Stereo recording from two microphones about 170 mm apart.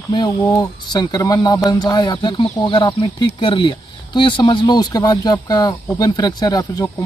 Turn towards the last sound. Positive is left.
turn(degrees=25)  # may be behind; listen again after turning